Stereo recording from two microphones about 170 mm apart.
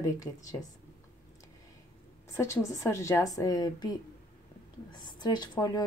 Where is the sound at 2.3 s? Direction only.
15° left (ahead or behind).